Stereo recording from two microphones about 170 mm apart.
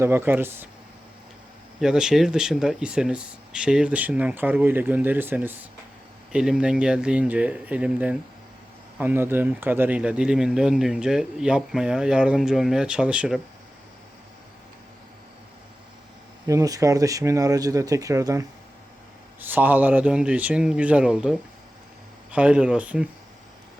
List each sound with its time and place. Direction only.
0.0 s speech: 15° right (ahead or behind)
1.8 s speech: 5° right (ahead or behind)
16.5 s speech: 20° right (ahead or behind)